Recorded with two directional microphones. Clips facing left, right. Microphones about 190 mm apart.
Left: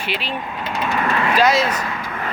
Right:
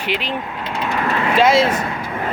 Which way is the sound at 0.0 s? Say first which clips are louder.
Right 3 dB; 15° right (ahead or behind).